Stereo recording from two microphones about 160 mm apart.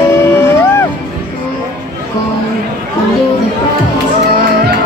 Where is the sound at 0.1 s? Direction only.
15° left (ahead or behind).